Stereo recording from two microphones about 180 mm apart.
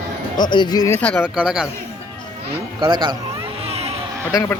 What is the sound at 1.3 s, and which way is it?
Speech, 5° right (ahead or behind).